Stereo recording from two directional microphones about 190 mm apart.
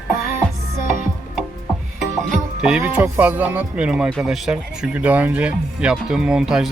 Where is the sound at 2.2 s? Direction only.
5° right (ahead or behind).